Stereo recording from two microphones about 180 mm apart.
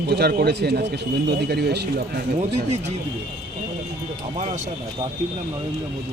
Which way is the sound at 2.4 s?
40° right (ahead or behind).